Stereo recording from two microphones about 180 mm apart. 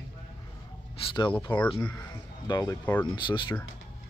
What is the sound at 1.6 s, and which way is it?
Speech, 5° left (ahead or behind).